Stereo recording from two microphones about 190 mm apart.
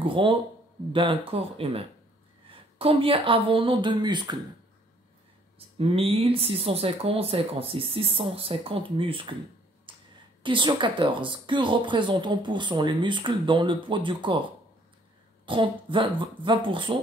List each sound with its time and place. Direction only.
0.0 s speech: 25° right (ahead or behind)
5.8 s speech: 30° right (ahead or behind)
9.9 s a sound: 25° right (ahead or behind)
10.4 s speech: 25° right (ahead or behind)
15.4 s speech: 25° right (ahead or behind)